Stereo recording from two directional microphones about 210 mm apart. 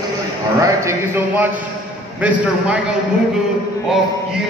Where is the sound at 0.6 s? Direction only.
15° right (ahead or behind).